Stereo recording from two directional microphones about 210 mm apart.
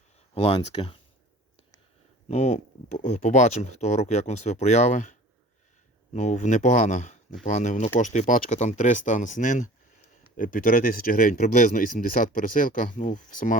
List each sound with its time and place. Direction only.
0.3 s speech: 30° left (ahead or behind)
2.2 s speech: 30° left (ahead or behind)
6.1 s speech: 35° left (ahead or behind)